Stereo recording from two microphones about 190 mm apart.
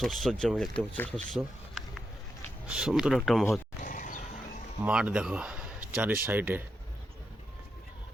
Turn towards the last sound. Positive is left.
turn(degrees=-10)  # may be behind; listen again after turning